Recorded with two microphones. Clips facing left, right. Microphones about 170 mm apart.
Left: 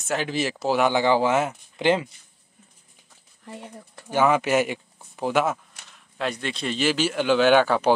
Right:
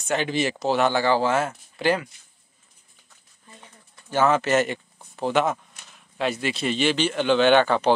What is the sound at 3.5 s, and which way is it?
Speech, 70° left (ahead or behind).